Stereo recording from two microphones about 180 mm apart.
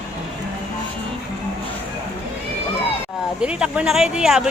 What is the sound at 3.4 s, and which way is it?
Speech, 5° right (ahead or behind).